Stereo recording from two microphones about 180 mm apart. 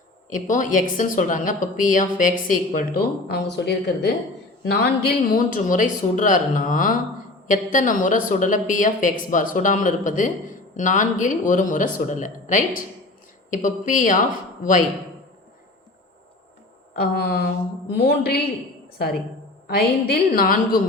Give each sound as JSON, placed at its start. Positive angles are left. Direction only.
{"t": 0.3, "sound": "a woman's voice", "side_deg": 45}
{"t": 17.0, "sound": "a woman's voice", "side_deg": 60}
{"t": 19.6, "sound": "a woman's voice", "side_deg": 60}